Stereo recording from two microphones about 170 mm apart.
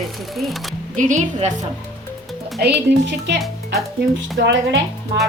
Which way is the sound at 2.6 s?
80° right.